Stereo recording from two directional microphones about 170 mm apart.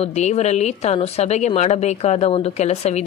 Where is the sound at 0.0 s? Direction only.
40° left (ahead or behind).